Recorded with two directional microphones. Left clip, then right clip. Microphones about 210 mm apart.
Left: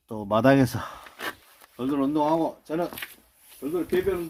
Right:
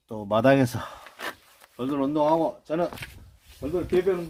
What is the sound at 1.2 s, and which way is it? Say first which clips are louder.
Wood: left 1 dB; 35° left (ahead or behind).